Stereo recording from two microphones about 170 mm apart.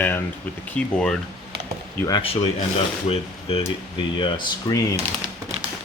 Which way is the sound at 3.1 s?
35° left (ahead or behind).